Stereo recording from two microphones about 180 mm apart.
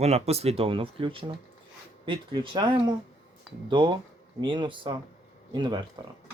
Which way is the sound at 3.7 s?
25° right (ahead or behind).